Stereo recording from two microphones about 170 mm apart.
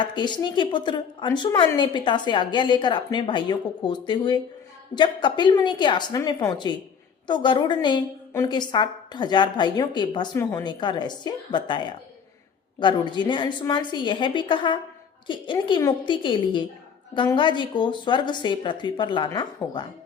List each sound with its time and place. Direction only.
0.0 s a woman's voice: 25° left (ahead or behind)